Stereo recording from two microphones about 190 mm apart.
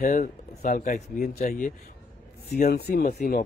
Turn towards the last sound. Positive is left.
turn(degrees=50)  # may be behind; listen again after turning